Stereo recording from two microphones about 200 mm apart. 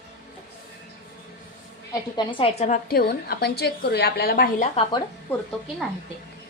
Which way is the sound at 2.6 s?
40° left (ahead or behind).